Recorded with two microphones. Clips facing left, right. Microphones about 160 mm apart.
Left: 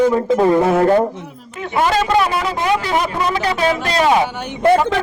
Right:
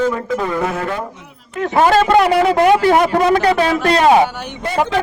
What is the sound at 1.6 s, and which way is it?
Speech, 50° right (ahead or behind).